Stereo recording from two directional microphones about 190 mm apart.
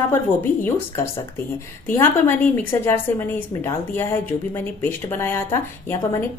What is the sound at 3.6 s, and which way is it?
A woman's voice, 15° left (ahead or behind).